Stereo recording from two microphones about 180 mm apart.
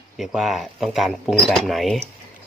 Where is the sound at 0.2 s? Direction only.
Centre (ahead or behind).